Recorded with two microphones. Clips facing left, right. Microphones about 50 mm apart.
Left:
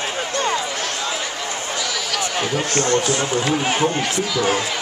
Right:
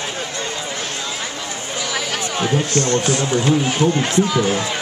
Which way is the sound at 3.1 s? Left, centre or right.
Left.